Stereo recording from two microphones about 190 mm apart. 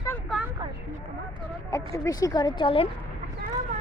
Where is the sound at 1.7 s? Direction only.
15° left (ahead or behind).